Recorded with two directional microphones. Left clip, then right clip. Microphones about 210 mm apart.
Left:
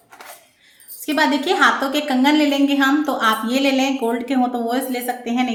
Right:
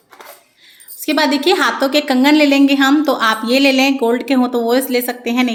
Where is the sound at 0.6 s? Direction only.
45° right (ahead or behind).